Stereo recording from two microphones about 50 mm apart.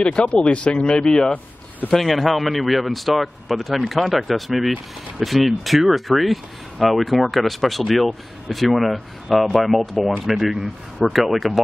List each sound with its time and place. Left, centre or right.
0.0 s speech: left
1.9 s speech: centre